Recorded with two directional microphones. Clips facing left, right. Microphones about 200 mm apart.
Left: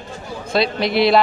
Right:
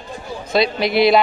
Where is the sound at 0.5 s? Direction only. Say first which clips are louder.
Right 1 dB; centre (ahead or behind).